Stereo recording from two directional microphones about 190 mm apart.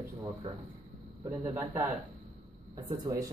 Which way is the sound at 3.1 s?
20° right (ahead or behind).